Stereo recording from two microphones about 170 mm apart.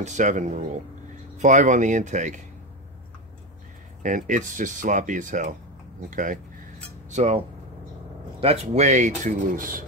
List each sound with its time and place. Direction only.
0.0 s speech: 45° right (ahead or behind)
4.0 s speech: 50° right (ahead or behind)